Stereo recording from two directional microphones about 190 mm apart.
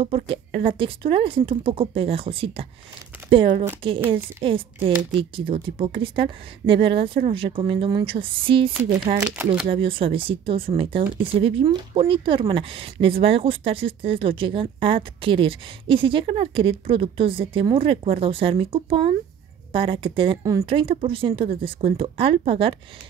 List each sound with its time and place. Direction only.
0.0 s speech: 30° right (ahead or behind)